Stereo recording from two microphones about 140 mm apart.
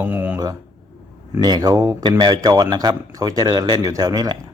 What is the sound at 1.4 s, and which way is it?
Speech, 30° right (ahead or behind).